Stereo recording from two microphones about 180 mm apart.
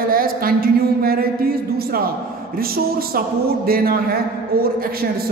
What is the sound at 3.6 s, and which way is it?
Speech, 55° right (ahead or behind).